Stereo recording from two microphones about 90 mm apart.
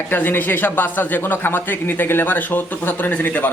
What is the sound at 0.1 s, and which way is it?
A man's voice, 20° left (ahead or behind).